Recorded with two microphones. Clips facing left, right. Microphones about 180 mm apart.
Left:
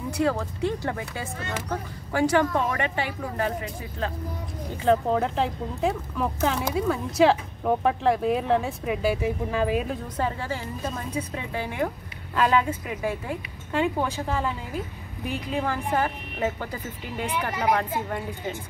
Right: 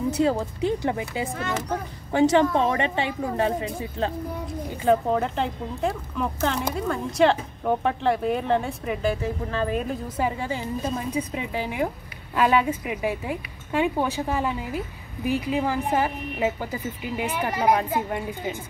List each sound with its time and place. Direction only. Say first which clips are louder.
0.1 s speech: right 2 dB; 20° right (ahead or behind)
4.8 s speech: right 1 dB; centre (ahead or behind)
10.1 s speech: right 2 dB; 15° right (ahead or behind)